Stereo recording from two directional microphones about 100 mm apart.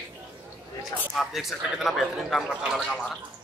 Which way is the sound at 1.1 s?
Centre (ahead or behind).